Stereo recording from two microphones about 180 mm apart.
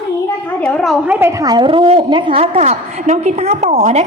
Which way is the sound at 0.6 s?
5° left (ahead or behind).